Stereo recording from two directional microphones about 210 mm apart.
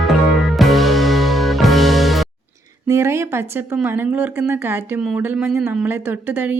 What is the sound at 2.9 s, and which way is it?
Speech, 10° right (ahead or behind).